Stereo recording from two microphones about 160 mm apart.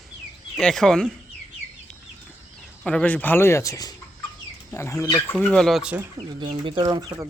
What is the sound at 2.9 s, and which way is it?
Speech, 10° left (ahead or behind).